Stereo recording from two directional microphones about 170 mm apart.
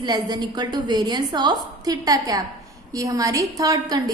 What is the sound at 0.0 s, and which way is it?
A woman's voice, 25° right (ahead or behind).